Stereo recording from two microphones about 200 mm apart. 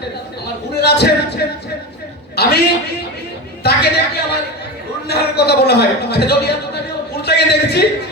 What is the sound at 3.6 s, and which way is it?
Speech, 55° left (ahead or behind).